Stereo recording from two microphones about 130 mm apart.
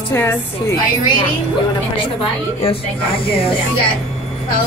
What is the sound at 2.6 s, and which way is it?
Speech, 45° left (ahead or behind).